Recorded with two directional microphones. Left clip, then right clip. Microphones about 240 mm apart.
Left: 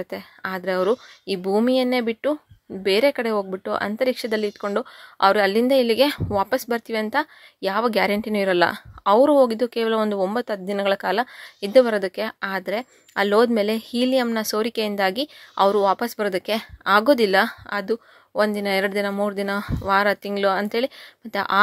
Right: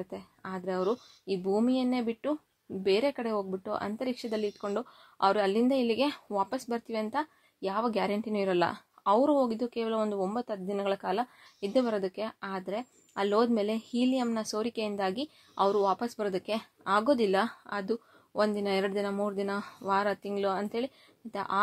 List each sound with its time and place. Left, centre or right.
0.0 s speech: left